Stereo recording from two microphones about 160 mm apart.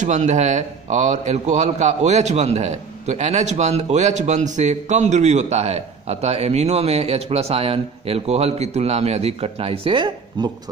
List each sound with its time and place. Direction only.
0.0 s a man's voice: 50° right (ahead or behind); by 10.5 s 30° right (ahead or behind)